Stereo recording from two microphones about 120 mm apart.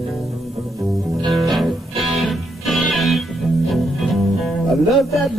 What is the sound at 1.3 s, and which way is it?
Music, centre (ahead or behind).